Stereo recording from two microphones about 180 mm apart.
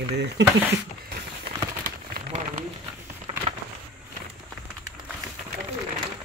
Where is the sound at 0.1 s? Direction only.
70° right (ahead or behind).